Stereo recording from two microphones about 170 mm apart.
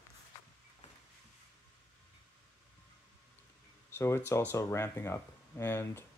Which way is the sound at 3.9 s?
15° left (ahead or behind).